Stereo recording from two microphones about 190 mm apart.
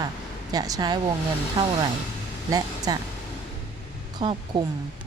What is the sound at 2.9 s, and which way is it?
Speech, 20° right (ahead or behind).